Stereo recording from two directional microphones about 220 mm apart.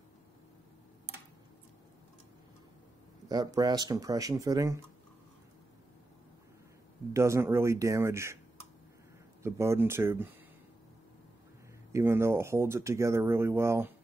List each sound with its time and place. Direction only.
3.3 s speech: 20° right (ahead or behind)
7.2 s speech: 15° right (ahead or behind)
9.4 s speech: 10° right (ahead or behind)
11.9 s speech: 10° right (ahead or behind)